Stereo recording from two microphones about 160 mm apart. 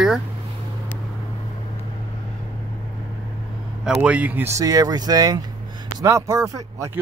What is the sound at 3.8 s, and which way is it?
Speech, 10° right (ahead or behind).